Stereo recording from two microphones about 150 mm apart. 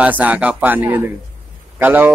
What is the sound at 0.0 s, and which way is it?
A man's voice, 10° right (ahead or behind).